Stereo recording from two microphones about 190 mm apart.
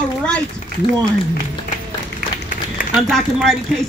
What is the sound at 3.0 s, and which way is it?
Speech, centre (ahead or behind).